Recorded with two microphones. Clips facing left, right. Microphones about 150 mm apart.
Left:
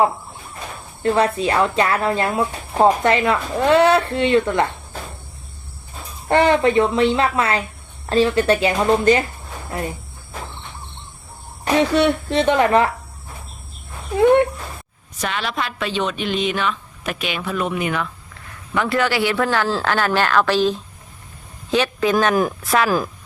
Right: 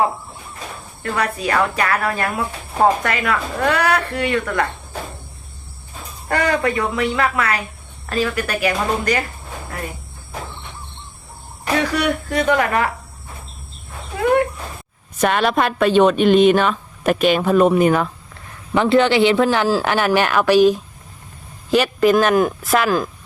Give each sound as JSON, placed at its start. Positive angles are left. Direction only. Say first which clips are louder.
{"t": 1.0, "sound": "speech", "louder": "left 5 dB", "side_deg": 25}
{"t": 6.2, "sound": "speech", "louder": "left 4 dB", "side_deg": 25}
{"t": 11.8, "sound": "speech", "louder": "left 4 dB", "side_deg": 25}
{"t": 14.2, "sound": "a sound", "louder": "left 3 dB", "side_deg": 25}
{"t": 15.2, "sound": "speech", "louder": "right 8 dB", "side_deg": -50}
{"t": 18.7, "sound": "speech", "louder": "right 5 dB", "side_deg": -25}